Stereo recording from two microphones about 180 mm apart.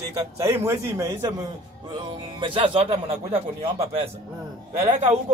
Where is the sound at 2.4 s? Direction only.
30° right (ahead or behind).